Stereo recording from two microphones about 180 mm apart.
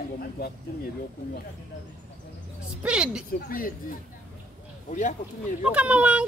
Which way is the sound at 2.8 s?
5° right (ahead or behind).